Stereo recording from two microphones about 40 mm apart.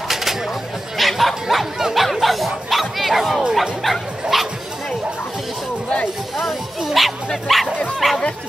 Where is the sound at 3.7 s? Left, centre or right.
Centre.